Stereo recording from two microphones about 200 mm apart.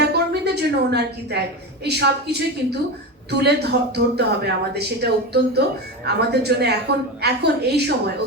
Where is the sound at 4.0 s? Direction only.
55° right (ahead or behind).